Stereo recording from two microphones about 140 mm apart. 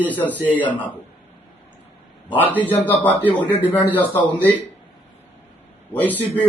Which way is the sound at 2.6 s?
10° left (ahead or behind).